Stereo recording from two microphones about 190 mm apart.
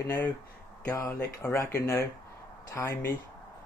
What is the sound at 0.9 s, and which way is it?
Speech, 15° left (ahead or behind).